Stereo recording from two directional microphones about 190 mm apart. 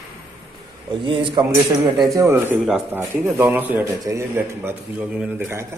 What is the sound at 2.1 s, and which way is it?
A man's voice, 15° right (ahead or behind).